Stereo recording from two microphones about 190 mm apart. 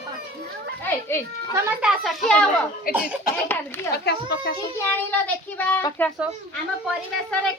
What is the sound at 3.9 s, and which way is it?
Speech, 60° left (ahead or behind).